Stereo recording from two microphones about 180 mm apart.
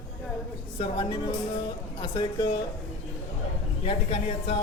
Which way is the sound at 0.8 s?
25° left (ahead or behind).